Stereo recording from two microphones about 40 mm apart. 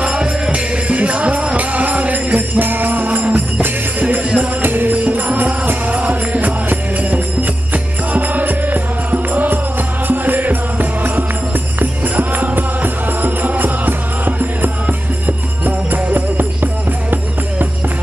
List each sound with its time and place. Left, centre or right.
0.5 s music: right
4.6 s music: right
4.9 s music: right